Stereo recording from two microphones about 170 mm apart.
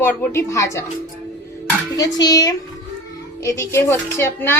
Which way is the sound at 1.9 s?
20° left (ahead or behind).